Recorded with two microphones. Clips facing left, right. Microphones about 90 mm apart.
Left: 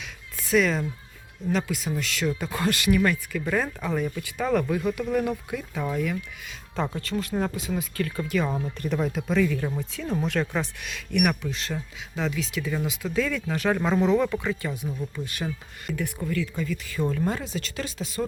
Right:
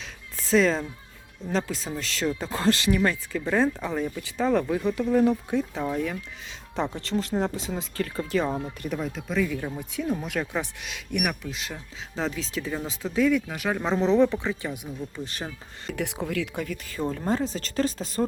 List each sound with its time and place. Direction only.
0.0 s a sound: 35° right (ahead or behind)
1.5 s speech: 30° right (ahead or behind)
6.9 s speech: 25° right (ahead or behind)
8.4 s speech: 15° right (ahead or behind)
9.0 s speech: 5° left (ahead or behind)
9.7 s speech: 15° right (ahead or behind)
11.2 s speech: 5° right (ahead or behind)
12.1 s speech: 35° right (ahead or behind)
13.1 s speech: 20° right (ahead or behind)
13.8 s speech: 25° right (ahead or behind)
15.9 s speech: 75° right (ahead or behind)
16.6 s speech: 45° right (ahead or behind)
17.0 s speech: 30° right (ahead or behind)